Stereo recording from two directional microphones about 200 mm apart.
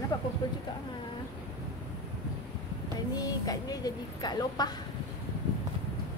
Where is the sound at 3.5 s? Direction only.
20° left (ahead or behind).